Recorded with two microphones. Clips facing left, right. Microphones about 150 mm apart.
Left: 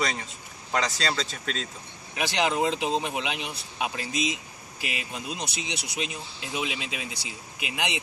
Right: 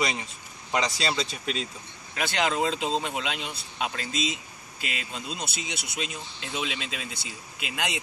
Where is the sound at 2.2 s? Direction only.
15° left (ahead or behind).